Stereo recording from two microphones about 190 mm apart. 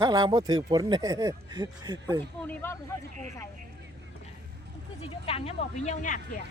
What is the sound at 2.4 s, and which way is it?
Speech, 10° left (ahead or behind).